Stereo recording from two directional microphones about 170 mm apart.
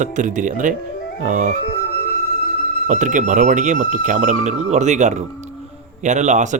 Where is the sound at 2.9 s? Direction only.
50° right (ahead or behind).